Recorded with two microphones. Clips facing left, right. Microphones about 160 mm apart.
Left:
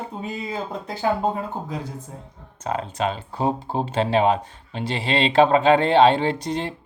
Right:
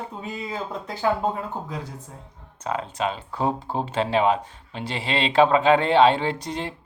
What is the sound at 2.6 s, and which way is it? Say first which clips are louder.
Speech: left 2 dB; 40° left (ahead or behind).